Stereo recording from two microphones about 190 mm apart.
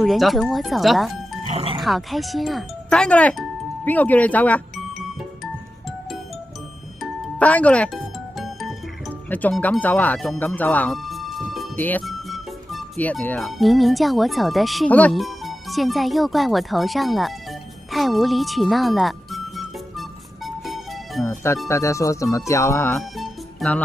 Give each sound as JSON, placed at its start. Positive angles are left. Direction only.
{"t": 0.0, "sound": "speech", "side_deg": 0}
{"t": 1.5, "sound": "music", "side_deg": -30}
{"t": 1.8, "sound": "speech", "side_deg": 0}
{"t": 7.0, "sound": "music", "side_deg": 5}
{"t": 9.3, "sound": "speech", "side_deg": 10}
{"t": 17.9, "sound": "music", "side_deg": 0}
{"t": 21.6, "sound": "speech", "side_deg": 15}
{"t": 22.9, "sound": "music", "side_deg": 0}